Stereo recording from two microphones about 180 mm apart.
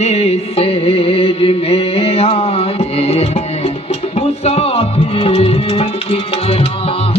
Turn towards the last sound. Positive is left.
turn(degrees=30)  # may be behind; listen again after turning